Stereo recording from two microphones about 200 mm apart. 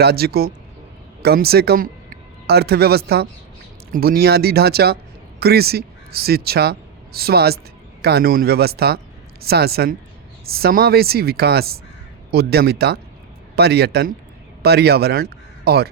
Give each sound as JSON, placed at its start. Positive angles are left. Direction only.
{"t": 0.0, "sound": "a woman's voice", "side_deg": -50}